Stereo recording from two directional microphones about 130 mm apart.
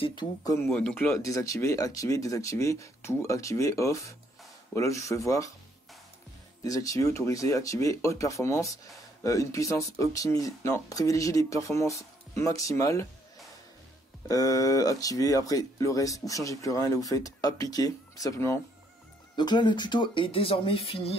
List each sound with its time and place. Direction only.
0.0 s speech: 35° left (ahead or behind)
0.7 s speech: 10° left (ahead or behind)
1.2 s speech: 25° left (ahead or behind)
6.6 s speech: 25° left (ahead or behind)
14.2 s speech: 25° left (ahead or behind)
19.3 s speech: 35° left (ahead or behind)